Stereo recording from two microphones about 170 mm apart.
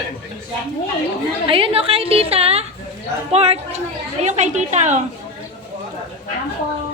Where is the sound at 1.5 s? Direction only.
30° right (ahead or behind).